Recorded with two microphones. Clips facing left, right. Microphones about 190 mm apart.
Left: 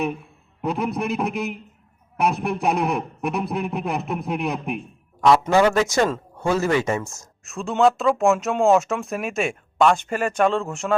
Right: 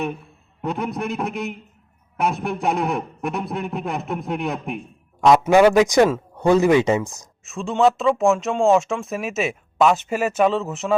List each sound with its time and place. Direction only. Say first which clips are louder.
0.6 s speech: left 1 dB; centre (ahead or behind)
5.2 s speech: right 3 dB; 15° right (ahead or behind)
7.4 s speech: right 1 dB; centre (ahead or behind)